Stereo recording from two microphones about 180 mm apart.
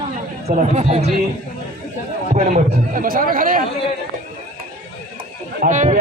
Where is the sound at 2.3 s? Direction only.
45° right (ahead or behind).